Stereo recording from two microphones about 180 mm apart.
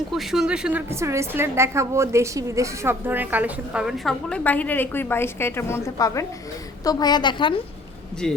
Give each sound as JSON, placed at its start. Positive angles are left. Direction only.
{"t": 0.1, "sound": "a woman's voice", "side_deg": 0}
{"t": 8.2, "sound": "a woman's voice", "side_deg": 5}